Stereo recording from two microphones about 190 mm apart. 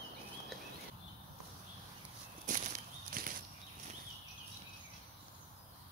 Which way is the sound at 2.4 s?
45° right (ahead or behind).